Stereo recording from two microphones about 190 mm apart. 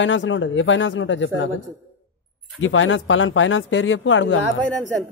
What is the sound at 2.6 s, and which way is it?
Speech, 90° left.